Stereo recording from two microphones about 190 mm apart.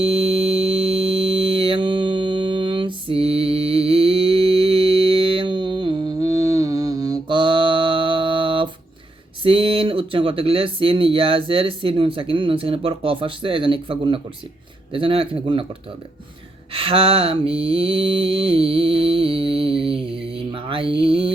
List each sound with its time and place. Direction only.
0.0 s a sound: 30° right (ahead or behind)
9.4 s speech: 30° right (ahead or behind)
16.7 s mantra: 30° right (ahead or behind)